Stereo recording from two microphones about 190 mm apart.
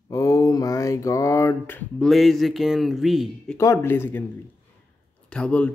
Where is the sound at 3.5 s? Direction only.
15° left (ahead or behind).